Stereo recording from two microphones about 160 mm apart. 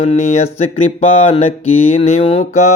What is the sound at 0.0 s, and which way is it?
Mantra, 45° left (ahead or behind).